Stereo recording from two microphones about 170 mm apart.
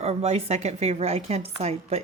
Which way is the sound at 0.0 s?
40° right (ahead or behind).